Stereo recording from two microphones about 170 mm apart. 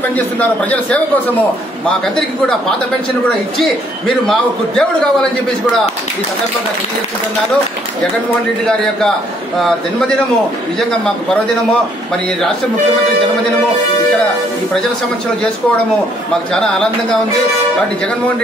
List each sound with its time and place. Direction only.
0.1 s a man's voice: 10° left (ahead or behind)
4.3 s a man's voice: 5° left (ahead or behind)